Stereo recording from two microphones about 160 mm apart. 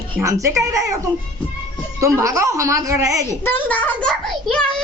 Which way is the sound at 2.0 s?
20° right (ahead or behind).